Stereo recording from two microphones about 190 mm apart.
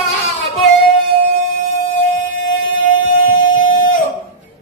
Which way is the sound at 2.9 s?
90° left.